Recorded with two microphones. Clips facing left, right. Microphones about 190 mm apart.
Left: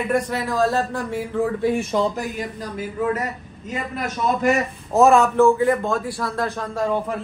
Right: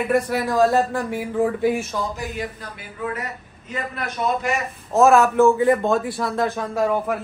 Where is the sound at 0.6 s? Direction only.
15° right (ahead or behind).